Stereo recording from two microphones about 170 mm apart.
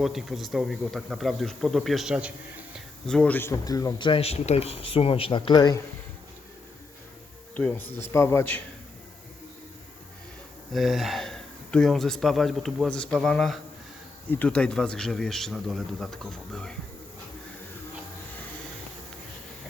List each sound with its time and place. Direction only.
0.0 s speech: centre (ahead or behind)
3.1 s a man's voice: 5° left (ahead or behind); by 5.8 s 25° left (ahead or behind)
7.5 s a man's voice: 10° left (ahead or behind)
10.7 s speech: centre (ahead or behind)